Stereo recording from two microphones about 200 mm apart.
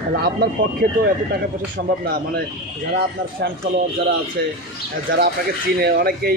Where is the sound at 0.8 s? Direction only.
50° right (ahead or behind).